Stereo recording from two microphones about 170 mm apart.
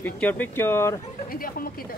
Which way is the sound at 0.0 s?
10° left (ahead or behind).